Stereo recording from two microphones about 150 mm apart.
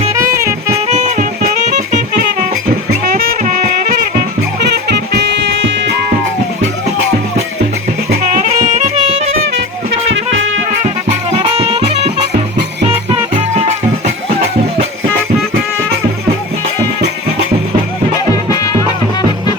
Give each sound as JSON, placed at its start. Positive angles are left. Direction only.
{"t": 0.1, "sound": "music", "side_deg": -20}
{"t": 0.9, "sound": "music", "side_deg": -50}
{"t": 3.1, "sound": "music", "side_deg": -70}
{"t": 4.7, "sound": "music", "side_deg": -90}
{"t": 8.3, "sound": "music", "side_deg": -55}
{"t": 11.3, "sound": "music", "side_deg": -40}